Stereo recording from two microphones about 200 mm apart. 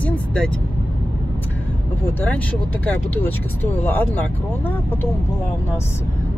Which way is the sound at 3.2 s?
10° left (ahead or behind).